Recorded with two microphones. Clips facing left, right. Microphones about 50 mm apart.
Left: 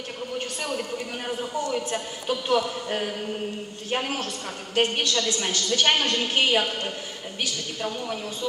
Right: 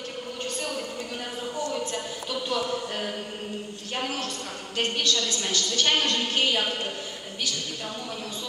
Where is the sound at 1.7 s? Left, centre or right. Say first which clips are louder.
Left 2 dB; left.